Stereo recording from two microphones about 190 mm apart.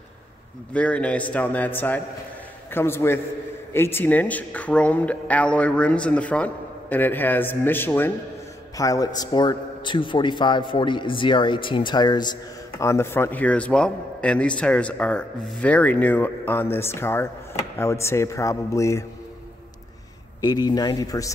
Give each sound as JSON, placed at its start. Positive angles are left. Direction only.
{"t": 0.7, "sound": "a man's voice", "side_deg": 5}
{"t": 20.3, "sound": "a man's voice", "side_deg": 20}